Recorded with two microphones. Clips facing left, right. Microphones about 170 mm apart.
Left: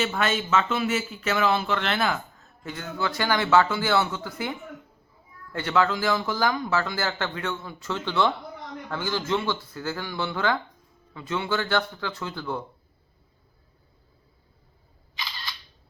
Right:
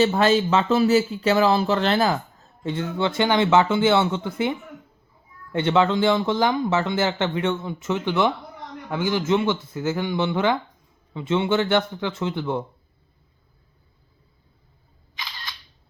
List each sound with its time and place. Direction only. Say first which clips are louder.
0.0 s speech: right 8 dB; 35° right (ahead or behind)
15.2 s single-lens reflex camera: even; 15° right (ahead or behind)